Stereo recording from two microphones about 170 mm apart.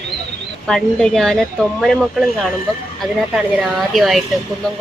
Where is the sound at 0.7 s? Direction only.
Centre (ahead or behind).